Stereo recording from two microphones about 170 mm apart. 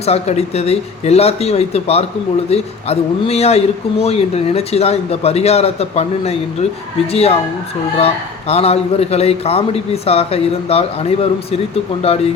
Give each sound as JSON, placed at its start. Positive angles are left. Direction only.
{"t": 0.0, "sound": "speech", "side_deg": 35}